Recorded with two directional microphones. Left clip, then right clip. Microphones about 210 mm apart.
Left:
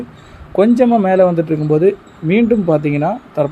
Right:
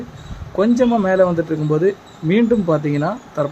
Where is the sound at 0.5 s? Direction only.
10° left (ahead or behind).